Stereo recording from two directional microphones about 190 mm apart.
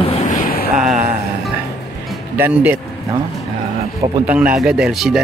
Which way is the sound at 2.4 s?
10° right (ahead or behind).